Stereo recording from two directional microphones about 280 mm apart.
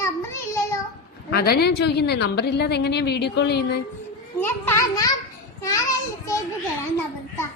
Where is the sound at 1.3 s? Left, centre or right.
Left.